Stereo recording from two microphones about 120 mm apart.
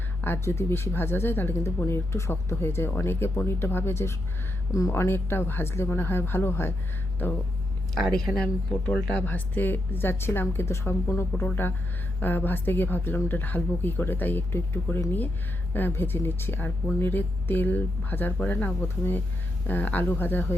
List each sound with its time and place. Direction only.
0.2 s speech: 20° left (ahead or behind)
7.9 s speech: 5° left (ahead or behind)